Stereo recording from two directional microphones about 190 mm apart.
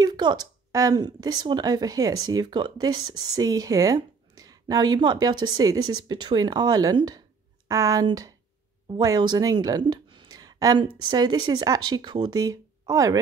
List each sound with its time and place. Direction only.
0.0 s a woman's voice: 20° right (ahead or behind)